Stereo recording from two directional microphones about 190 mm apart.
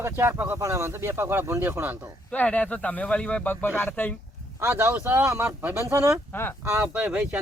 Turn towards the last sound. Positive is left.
turn(degrees=-5)  # may be behind; listen again after turning